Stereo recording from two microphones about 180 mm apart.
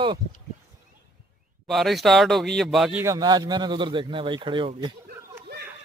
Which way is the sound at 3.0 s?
20° right (ahead or behind).